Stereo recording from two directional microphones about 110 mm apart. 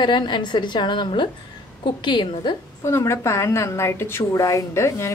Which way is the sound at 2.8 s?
25° left (ahead or behind).